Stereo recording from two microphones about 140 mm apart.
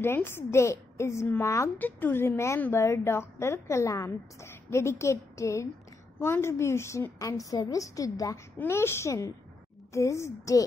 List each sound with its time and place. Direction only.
0.0 s a woman's voice: 15° left (ahead or behind)